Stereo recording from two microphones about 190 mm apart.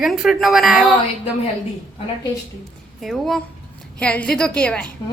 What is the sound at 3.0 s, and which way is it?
A woman's voice, centre (ahead or behind).